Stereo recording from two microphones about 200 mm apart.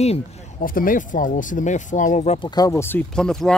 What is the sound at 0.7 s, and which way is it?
Speech, 45° left (ahead or behind).